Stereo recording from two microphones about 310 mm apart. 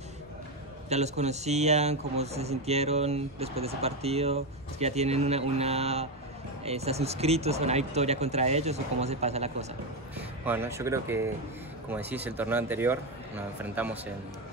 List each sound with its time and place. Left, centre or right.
0.8 s speech: right
10.1 s speech: centre